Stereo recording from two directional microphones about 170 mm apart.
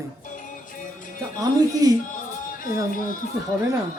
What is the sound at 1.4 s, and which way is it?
Speech, 20° right (ahead or behind).